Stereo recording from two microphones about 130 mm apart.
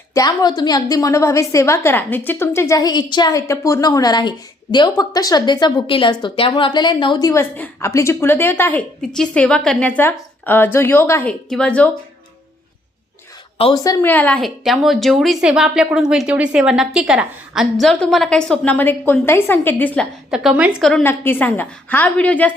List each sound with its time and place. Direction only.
0.1 s a woman's voice: 30° left (ahead or behind)
7.5 s a woman's voice: 15° left (ahead or behind)
9.0 s a woman's voice: 5° left (ahead or behind)
11.3 s a woman's voice: 5° left (ahead or behind)
13.7 s a woman's voice: 25° left (ahead or behind)
14.0 s a woman's voice: 15° left (ahead or behind)
20.3 s a woman's voice: 10° right (ahead or behind)
21.0 s a woman's voice: 15° left (ahead or behind)